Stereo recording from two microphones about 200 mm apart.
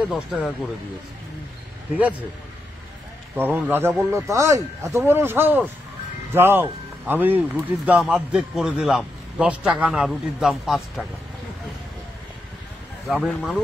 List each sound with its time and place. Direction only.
0.1 s a man's voice: centre (ahead or behind)
2.0 s speech: 10° right (ahead or behind)
3.3 s a man's voice: 10° right (ahead or behind)
13.0 s a man's voice: centre (ahead or behind)